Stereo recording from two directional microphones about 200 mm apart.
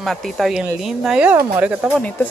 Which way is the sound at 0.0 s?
Centre (ahead or behind).